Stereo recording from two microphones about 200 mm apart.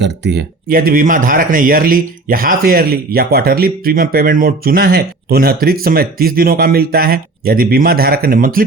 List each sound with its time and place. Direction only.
0.0 s speech: 55° right (ahead or behind)